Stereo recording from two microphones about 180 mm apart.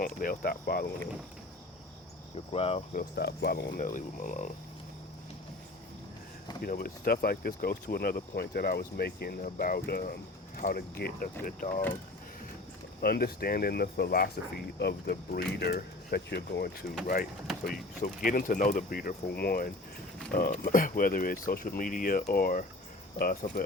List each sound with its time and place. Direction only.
0.0 s speech: 50° left (ahead or behind)
2.5 s cricket: 30° left (ahead or behind)
2.9 s speech: 60° left (ahead or behind); by 4.5 s 45° left (ahead or behind)
6.6 s speech: 55° left (ahead or behind)
13.0 s speech: 60° left (ahead or behind)
17.7 s speech: 50° left (ahead or behind)